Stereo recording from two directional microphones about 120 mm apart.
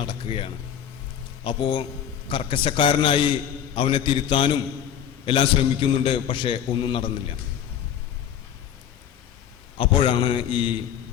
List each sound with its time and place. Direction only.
0.0 s a man's voice: 45° left (ahead or behind)
9.7 s a man's voice: 45° left (ahead or behind)